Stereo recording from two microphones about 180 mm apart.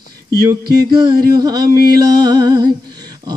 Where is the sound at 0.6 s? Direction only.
60° right (ahead or behind).